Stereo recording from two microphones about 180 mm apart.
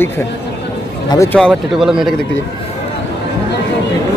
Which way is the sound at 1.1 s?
15° left (ahead or behind).